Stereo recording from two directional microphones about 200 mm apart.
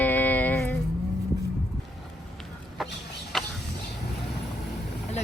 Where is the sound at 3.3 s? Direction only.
Centre (ahead or behind).